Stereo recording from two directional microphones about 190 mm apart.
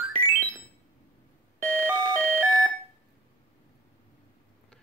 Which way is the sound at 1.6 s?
15° right (ahead or behind).